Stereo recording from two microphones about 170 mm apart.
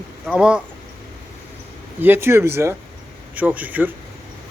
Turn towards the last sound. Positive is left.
turn(degrees=-10)  # may be behind; listen again after turning